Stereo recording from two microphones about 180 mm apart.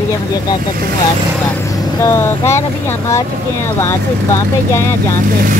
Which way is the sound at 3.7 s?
15° left (ahead or behind).